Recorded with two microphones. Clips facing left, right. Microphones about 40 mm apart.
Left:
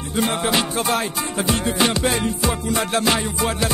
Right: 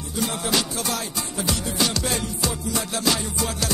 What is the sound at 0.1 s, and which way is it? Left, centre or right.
Music, left.